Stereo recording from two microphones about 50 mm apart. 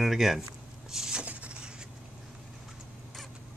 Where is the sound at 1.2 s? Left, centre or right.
Right.